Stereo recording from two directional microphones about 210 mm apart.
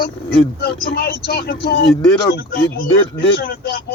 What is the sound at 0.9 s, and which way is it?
Speech, 50° left (ahead or behind).